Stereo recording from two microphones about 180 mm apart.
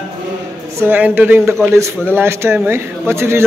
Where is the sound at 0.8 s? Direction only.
10° right (ahead or behind).